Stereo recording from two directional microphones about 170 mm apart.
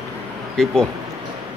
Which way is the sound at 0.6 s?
Centre (ahead or behind).